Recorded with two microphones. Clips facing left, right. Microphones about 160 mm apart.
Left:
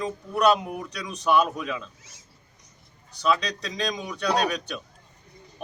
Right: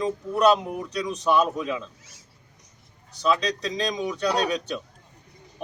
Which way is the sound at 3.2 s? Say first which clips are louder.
Right 1 dB; 25° right (ahead or behind).